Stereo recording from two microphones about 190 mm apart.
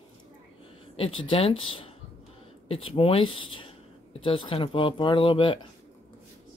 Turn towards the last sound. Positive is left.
turn(degrees=25)  # may be behind; listen again after turning